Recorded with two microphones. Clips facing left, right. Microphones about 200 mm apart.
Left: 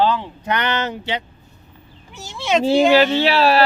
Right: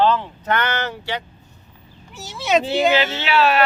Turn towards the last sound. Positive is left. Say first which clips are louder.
# left 3 dB
turn(degrees=35)  # may be behind; listen again after turning